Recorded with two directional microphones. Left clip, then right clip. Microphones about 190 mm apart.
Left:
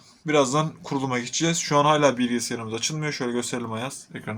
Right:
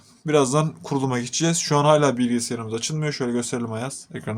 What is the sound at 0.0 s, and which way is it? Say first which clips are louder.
Speech: right 1 dB; 65° right (ahead or behind).